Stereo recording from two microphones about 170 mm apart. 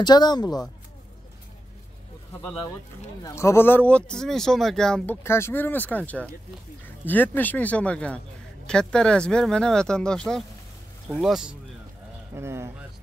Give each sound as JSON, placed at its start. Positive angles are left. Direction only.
{"t": 0.0, "sound": "speech", "side_deg": 25}
{"t": 3.3, "sound": "speech", "side_deg": 15}
{"t": 12.4, "sound": "speech", "side_deg": -15}